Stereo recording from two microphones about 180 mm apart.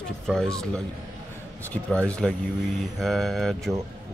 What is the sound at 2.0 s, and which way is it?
Speech, 5° left (ahead or behind).